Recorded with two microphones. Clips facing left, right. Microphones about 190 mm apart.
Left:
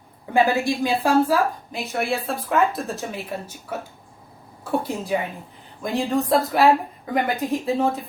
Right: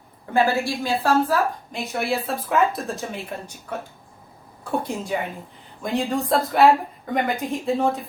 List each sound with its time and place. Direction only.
0.3 s a woman's voice: 15° left (ahead or behind)
1.7 s speech: centre (ahead or behind)
4.8 s speech: 5° left (ahead or behind)